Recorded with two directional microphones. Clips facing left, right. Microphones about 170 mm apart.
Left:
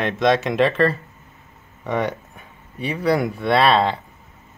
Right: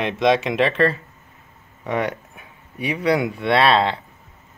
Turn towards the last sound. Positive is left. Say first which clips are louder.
# even
turn(degrees=0)  # may be behind; listen again after turning